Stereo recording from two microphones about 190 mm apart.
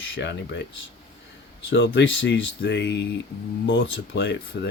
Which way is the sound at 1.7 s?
85° left.